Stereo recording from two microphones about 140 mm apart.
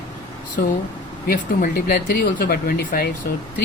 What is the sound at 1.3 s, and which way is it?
Speech, 90° left.